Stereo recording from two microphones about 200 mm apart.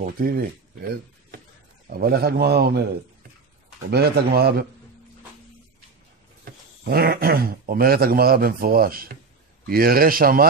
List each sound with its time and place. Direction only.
0.0 s a man's voice: 45° right (ahead or behind)
3.9 s a man's voice: 50° right (ahead or behind)
6.4 s a man's voice: 50° right (ahead or behind)